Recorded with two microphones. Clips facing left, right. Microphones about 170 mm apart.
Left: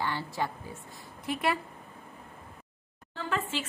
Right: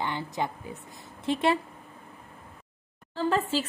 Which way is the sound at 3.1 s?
35° right (ahead or behind).